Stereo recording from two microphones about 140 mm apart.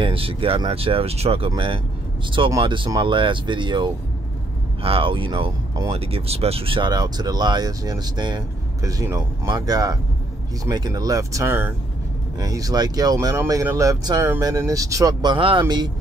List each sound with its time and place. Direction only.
0.0 s speech: 40° right (ahead or behind); by 15.3 s 25° right (ahead or behind)
15.3 s speech: 40° right (ahead or behind)